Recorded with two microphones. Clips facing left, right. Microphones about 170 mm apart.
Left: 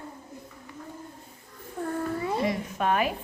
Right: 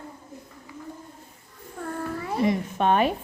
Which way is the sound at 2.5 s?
25° right (ahead or behind).